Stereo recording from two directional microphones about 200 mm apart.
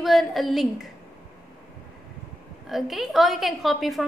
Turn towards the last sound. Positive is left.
turn(degrees=0)  # may be behind; listen again after turning